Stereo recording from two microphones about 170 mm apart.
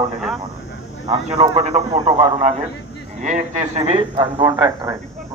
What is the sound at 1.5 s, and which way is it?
A man's voice, 40° right (ahead or behind).